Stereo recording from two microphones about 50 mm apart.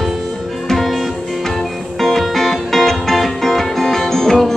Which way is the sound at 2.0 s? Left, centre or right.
Centre.